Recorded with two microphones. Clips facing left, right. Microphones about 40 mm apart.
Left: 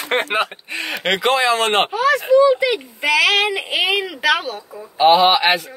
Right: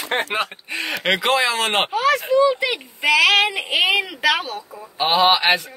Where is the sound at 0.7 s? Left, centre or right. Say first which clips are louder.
Even; centre.